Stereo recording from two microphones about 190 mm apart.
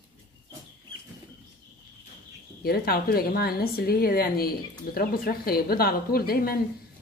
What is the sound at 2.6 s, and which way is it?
A woman's voice, 55° left (ahead or behind).